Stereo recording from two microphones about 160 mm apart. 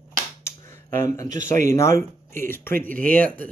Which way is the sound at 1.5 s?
15° left (ahead or behind).